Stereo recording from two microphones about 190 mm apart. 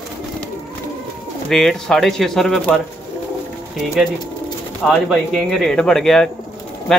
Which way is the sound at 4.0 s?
Centre (ahead or behind).